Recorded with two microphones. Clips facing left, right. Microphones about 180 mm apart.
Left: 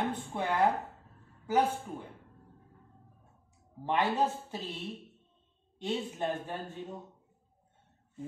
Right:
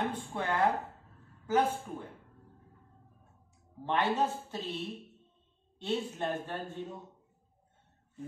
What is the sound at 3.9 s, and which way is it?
Speech, 10° left (ahead or behind).